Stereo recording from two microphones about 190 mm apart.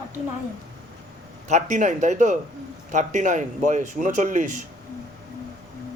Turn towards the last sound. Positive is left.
turn(degrees=-40)  # may be behind; listen again after turning